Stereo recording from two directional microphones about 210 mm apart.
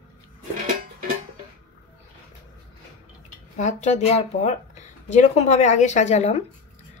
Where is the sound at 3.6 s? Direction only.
35° left (ahead or behind).